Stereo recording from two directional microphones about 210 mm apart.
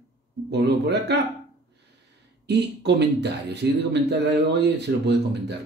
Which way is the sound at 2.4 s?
55° right (ahead or behind).